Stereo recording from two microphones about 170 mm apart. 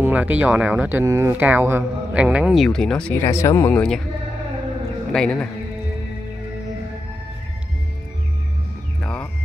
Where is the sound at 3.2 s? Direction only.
15° left (ahead or behind).